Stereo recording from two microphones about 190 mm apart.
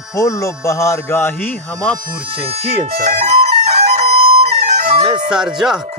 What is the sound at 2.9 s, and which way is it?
Music, 30° right (ahead or behind).